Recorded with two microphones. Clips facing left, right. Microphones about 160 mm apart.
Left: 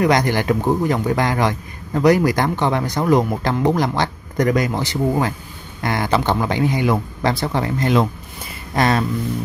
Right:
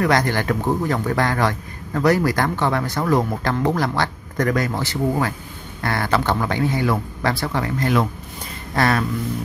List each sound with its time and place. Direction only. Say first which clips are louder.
0.0 s speech: left 2 dB; 15° left (ahead or behind)